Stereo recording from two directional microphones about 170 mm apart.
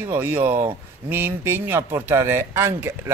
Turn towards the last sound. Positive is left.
turn(degrees=-15)  # may be behind; listen again after turning